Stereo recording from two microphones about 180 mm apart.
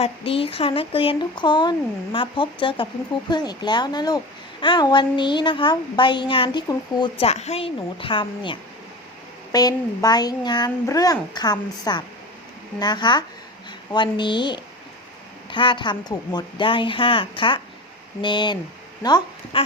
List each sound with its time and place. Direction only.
0.0 s a woman's voice: 30° left (ahead or behind)